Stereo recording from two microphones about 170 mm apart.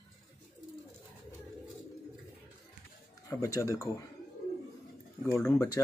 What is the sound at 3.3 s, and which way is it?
Speech, 20° left (ahead or behind).